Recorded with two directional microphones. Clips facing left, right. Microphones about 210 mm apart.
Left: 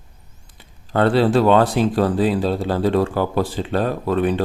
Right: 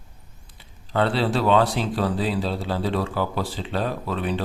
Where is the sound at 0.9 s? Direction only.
50° left (ahead or behind).